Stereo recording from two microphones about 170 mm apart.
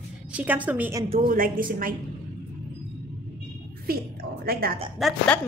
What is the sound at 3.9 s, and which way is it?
Speech, 60° right (ahead or behind).